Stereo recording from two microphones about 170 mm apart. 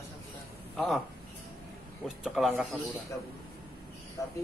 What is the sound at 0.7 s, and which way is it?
Speech, centre (ahead or behind).